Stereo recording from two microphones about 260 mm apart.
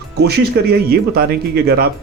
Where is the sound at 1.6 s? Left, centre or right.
Right.